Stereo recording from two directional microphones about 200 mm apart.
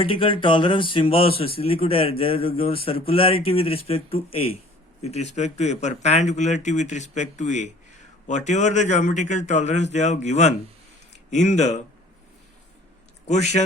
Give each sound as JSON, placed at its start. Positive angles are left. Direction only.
{"t": 0.0, "sound": "speech", "side_deg": 25}
{"t": 13.2, "sound": "speech", "side_deg": 35}